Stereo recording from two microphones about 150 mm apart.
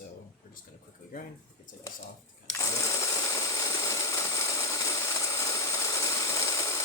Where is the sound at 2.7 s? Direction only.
20° left (ahead or behind).